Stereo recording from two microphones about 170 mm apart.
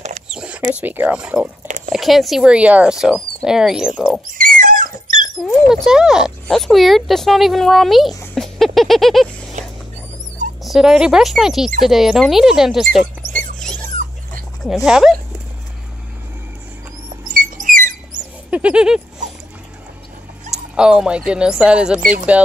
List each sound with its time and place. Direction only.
0.3 s rodents: 5° right (ahead or behind)
0.7 s speech: 10° right (ahead or behind)
4.3 s a sound: 55° right (ahead or behind)
5.4 s speech: centre (ahead or behind)
8.4 s a sound: centre (ahead or behind)
9.6 s rodents: 45° right (ahead or behind)
10.6 s speech: centre (ahead or behind)
13.6 s dog: 5° left (ahead or behind)
14.6 s speech: centre (ahead or behind)
17.3 s squeak: 50° right (ahead or behind)
18.5 s a sound: 5° right (ahead or behind)
20.7 s speech: 5° right (ahead or behind)